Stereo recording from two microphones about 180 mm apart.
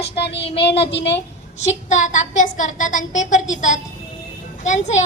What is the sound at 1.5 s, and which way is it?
A woman's voice, 40° left (ahead or behind).